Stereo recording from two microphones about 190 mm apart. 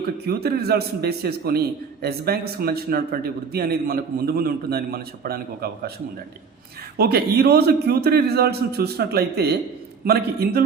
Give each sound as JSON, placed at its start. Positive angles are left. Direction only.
{"t": 0.3, "sound": "a man's voice", "side_deg": -55}
{"t": 6.9, "sound": "a man's voice", "side_deg": -55}